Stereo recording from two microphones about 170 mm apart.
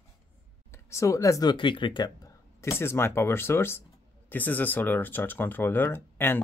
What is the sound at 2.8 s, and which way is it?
Speech, 15° left (ahead or behind).